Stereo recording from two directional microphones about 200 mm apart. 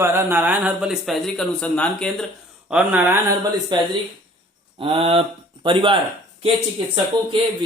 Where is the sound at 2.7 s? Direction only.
5° right (ahead or behind).